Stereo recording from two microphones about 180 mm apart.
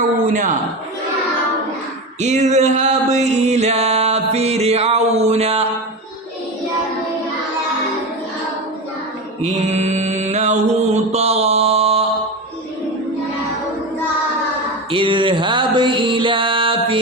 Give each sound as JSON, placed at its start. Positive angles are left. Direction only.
{"t": 2.2, "sound": "music", "side_deg": -40}
{"t": 9.4, "sound": "mantra", "side_deg": -40}
{"t": 14.8, "sound": "music", "side_deg": -30}